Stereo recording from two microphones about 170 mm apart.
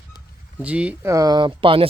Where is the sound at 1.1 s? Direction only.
20° right (ahead or behind).